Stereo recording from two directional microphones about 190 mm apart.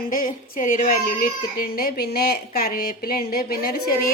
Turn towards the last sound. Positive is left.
turn(degrees=50)  # may be behind; listen again after turning